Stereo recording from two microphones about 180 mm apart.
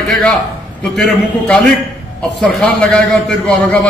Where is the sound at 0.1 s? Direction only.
5° left (ahead or behind).